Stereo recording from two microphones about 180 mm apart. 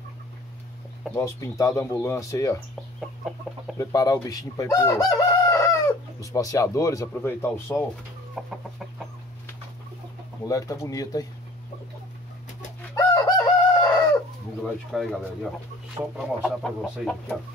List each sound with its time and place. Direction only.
1.1 s speech: 15° left (ahead or behind)
3.7 s chicken: 20° left (ahead or behind)
8.4 s speech: centre (ahead or behind)
10.4 s speech: 20° left (ahead or behind)
12.9 s chicken: 20° left (ahead or behind)
13.9 s chicken: 5° left (ahead or behind)
16.2 s speech: centre (ahead or behind)